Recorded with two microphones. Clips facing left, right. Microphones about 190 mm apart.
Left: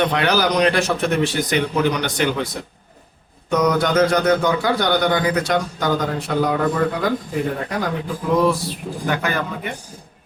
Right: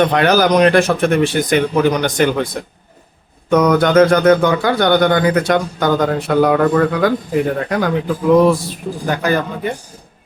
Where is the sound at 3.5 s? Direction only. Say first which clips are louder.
Right 6 dB; 55° right (ahead or behind).